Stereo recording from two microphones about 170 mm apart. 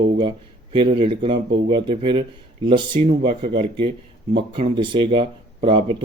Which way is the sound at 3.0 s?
40° right (ahead or behind).